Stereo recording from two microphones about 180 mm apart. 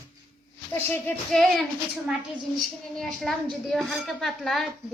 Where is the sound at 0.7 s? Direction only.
10° left (ahead or behind).